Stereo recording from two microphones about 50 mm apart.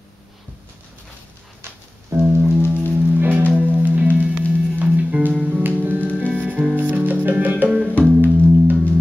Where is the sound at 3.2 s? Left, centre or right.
Right.